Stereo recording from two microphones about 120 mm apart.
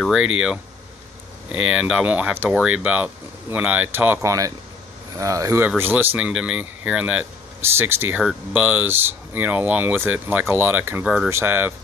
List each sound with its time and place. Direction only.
0.0 s speech: 5° right (ahead or behind)
5.1 s speech: 25° right (ahead or behind)
6.1 s speech: 5° right (ahead or behind)